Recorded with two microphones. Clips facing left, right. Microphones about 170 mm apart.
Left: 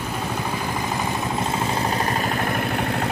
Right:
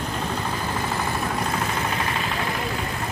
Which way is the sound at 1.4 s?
30° left (ahead or behind).